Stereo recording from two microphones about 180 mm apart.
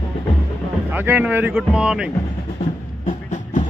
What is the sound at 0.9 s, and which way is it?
Speech, 10° right (ahead or behind).